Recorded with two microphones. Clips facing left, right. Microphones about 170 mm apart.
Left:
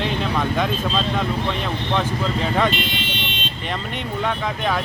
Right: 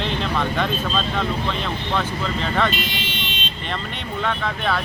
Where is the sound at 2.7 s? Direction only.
55° left (ahead or behind).